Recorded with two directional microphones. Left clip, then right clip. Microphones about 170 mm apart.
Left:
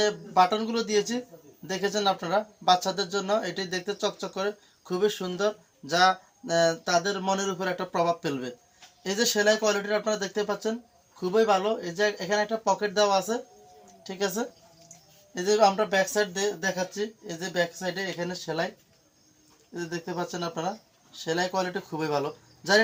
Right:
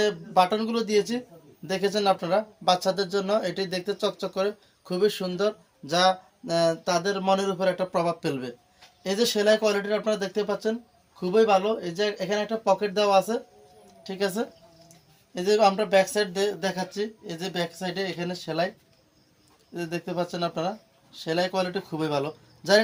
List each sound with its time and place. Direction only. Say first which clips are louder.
0.0 s a woman's voice: even; 20° right (ahead or behind)
19.7 s speech: right 3 dB; 20° right (ahead or behind)